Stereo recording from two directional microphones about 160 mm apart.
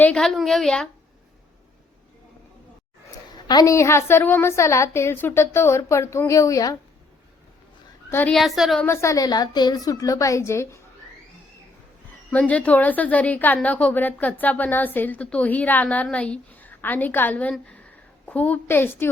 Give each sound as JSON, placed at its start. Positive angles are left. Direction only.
{"t": 0.0, "sound": "a woman's voice", "side_deg": 5}
{"t": 3.4, "sound": "a woman's voice", "side_deg": 20}
{"t": 8.1, "sound": "a woman's voice", "side_deg": 10}
{"t": 8.4, "sound": "a woman's voice", "side_deg": 0}
{"t": 8.8, "sound": "a woman's voice", "side_deg": 15}
{"t": 12.3, "sound": "a woman's voice", "side_deg": 10}